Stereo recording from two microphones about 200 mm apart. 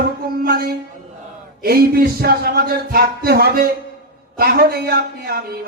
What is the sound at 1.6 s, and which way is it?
A man's voice, 50° right (ahead or behind).